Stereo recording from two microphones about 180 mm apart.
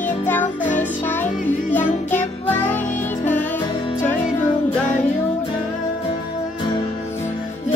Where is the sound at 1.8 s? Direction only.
40° left (ahead or behind).